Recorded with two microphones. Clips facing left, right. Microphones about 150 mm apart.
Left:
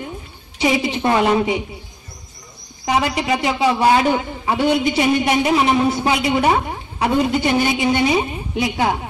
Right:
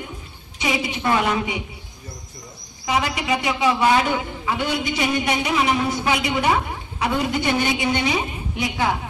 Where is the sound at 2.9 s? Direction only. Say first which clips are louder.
Left 3 dB; 30° left (ahead or behind).